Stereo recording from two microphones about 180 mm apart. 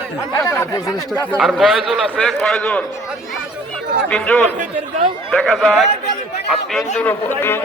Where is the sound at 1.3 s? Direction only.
Centre (ahead or behind).